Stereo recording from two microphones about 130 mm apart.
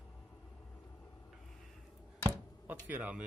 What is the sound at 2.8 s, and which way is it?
Speech, 15° right (ahead or behind).